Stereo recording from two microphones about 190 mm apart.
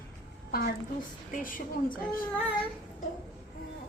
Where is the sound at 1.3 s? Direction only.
45° left (ahead or behind).